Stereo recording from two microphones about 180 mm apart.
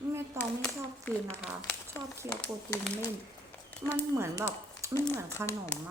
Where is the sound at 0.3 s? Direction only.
10° left (ahead or behind).